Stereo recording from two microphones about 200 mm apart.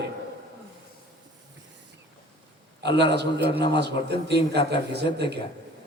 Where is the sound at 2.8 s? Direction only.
55° right (ahead or behind).